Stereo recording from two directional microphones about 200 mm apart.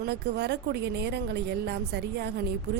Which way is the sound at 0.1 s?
55° right (ahead or behind).